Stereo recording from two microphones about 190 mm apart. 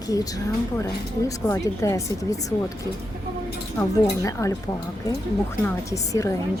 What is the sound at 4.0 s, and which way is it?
Speech, 15° left (ahead or behind).